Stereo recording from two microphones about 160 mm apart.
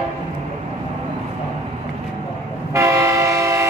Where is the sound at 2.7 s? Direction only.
20° right (ahead or behind).